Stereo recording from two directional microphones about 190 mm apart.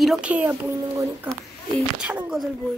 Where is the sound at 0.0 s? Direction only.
5° right (ahead or behind).